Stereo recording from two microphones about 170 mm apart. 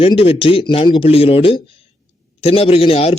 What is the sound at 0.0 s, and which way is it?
Speech, 35° left (ahead or behind).